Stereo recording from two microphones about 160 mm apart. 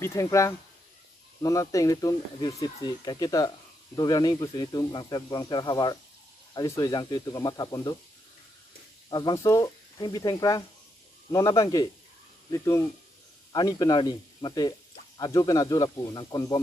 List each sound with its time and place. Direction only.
0.0 s speech: 20° left (ahead or behind)
9.1 s speech: 20° left (ahead or behind)